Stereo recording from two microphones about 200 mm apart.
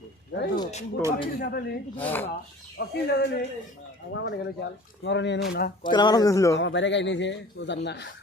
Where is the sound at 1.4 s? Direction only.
50° left (ahead or behind).